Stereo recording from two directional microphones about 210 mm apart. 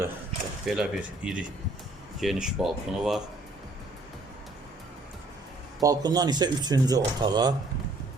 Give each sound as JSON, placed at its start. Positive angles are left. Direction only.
{"t": 0.6, "sound": "speech", "side_deg": 0}
{"t": 5.8, "sound": "speech", "side_deg": -15}